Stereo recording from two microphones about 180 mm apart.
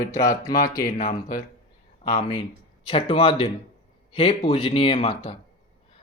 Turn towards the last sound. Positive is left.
turn(degrees=30)  # may be behind; listen again after turning